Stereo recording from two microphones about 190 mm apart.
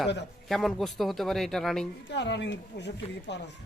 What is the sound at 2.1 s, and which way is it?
Speech, 65° left (ahead or behind).